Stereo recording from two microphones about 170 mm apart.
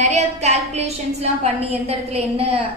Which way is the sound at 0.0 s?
40° right (ahead or behind).